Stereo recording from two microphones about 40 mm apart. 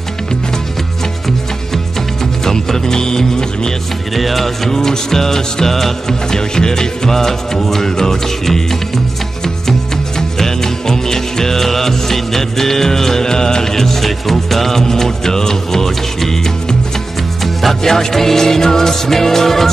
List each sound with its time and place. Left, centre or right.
2.4 s music: centre
4.1 s music: centre
17.6 s music: centre